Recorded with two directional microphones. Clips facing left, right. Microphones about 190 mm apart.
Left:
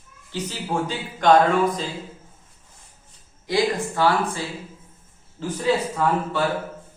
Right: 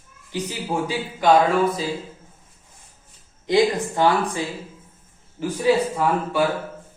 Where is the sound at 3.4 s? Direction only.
20° right (ahead or behind).